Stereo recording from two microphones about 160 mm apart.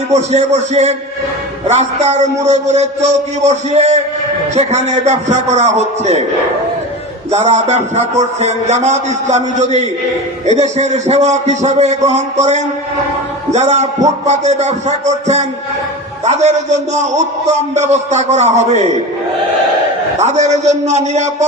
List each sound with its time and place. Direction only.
0.1 s a man's voice: 45° right (ahead or behind)
7.3 s a man's voice: 40° right (ahead or behind)
20.1 s a man's voice: 45° right (ahead or behind)